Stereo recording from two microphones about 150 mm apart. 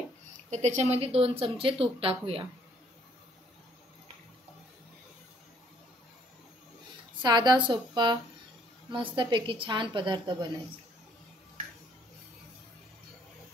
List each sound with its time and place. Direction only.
0.5 s speech: 50° right (ahead or behind)
7.2 s speech: 30° right (ahead or behind)